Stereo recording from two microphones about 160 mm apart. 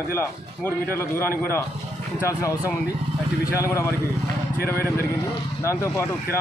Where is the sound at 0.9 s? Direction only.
15° left (ahead or behind).